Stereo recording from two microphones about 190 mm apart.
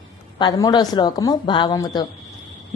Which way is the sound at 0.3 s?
20° left (ahead or behind).